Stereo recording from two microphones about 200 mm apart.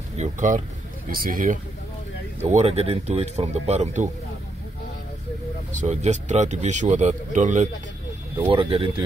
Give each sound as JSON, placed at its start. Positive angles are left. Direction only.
{"t": 0.2, "sound": "a man's voice", "side_deg": -40}
{"t": 2.4, "sound": "a man's voice", "side_deg": -35}
{"t": 5.7, "sound": "a man's voice", "side_deg": -35}